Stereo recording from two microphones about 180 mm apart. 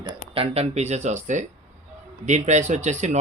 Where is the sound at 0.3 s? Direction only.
35° right (ahead or behind).